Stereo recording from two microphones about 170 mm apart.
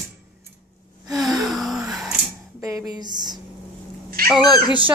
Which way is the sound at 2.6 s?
20° right (ahead or behind).